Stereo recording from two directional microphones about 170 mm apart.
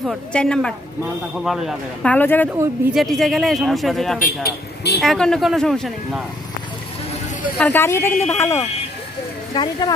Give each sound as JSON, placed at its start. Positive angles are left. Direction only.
{"t": 0.0, "sound": "speech", "side_deg": 0}
{"t": 2.0, "sound": "speech", "side_deg": 10}
{"t": 4.2, "sound": "speech", "side_deg": 65}
{"t": 5.0, "sound": "speech", "side_deg": 5}
{"t": 7.5, "sound": "speech", "side_deg": 5}
{"t": 9.5, "sound": "speech", "side_deg": 25}